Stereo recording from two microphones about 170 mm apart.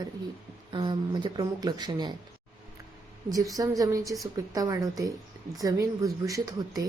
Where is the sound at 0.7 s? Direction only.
30° right (ahead or behind).